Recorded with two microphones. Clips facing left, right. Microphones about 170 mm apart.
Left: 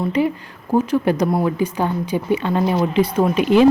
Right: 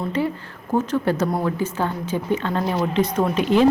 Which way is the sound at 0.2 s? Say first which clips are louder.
Left 4 dB; 15° left (ahead or behind).